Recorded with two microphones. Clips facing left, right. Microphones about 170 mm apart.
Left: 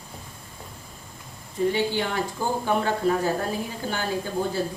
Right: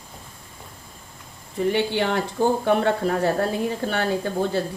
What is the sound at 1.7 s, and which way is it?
Speech, 65° right (ahead or behind).